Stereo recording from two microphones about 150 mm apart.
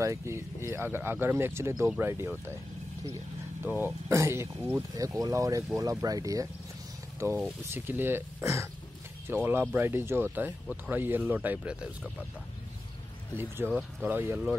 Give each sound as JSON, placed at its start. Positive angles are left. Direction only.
{"t": 0.0, "sound": "speech", "side_deg": -20}
{"t": 3.6, "sound": "speech", "side_deg": -10}
{"t": 7.2, "sound": "speech", "side_deg": -10}
{"t": 13.6, "sound": "speech", "side_deg": -15}